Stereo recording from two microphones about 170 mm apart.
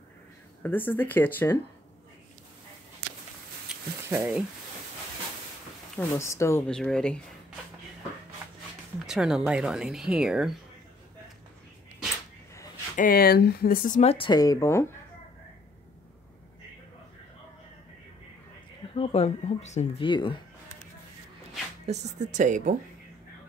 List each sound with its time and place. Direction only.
0.6 s speech: 10° left (ahead or behind)
3.6 s a sound: 10° right (ahead or behind)
5.9 s speech: 15° left (ahead or behind)
6.7 s speech: 5° left (ahead or behind)
9.0 s speech: 5° right (ahead or behind)
12.9 s speech: 55° left (ahead or behind)
14.1 s speech: 25° left (ahead or behind)
18.9 s speech: 40° left (ahead or behind)
21.8 s a woman's voice: 45° right (ahead or behind)